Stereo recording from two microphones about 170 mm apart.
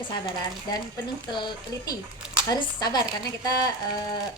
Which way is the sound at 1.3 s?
25° left (ahead or behind).